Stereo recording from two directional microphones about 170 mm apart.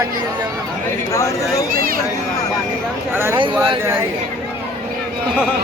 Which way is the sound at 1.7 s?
60° right (ahead or behind).